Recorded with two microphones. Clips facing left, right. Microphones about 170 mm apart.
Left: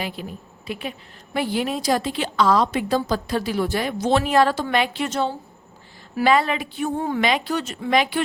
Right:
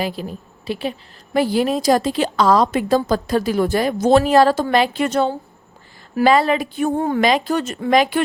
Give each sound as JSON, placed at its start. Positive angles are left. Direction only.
{"t": 0.0, "sound": "a woman's voice", "side_deg": -35}
{"t": 5.0, "sound": "a woman's voice", "side_deg": -55}
{"t": 6.1, "sound": "speech", "side_deg": -40}